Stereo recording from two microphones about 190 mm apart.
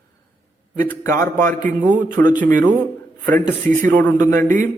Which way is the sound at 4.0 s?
10° left (ahead or behind).